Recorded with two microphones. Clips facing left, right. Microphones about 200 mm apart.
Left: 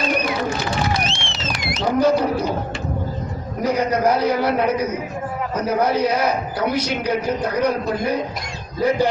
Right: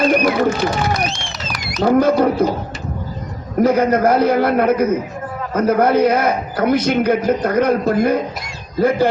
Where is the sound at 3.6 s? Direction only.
50° right (ahead or behind).